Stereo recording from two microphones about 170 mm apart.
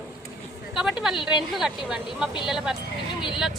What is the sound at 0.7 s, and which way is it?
Speech, centre (ahead or behind).